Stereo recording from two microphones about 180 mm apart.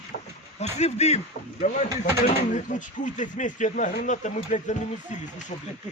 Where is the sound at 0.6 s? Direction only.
35° left (ahead or behind).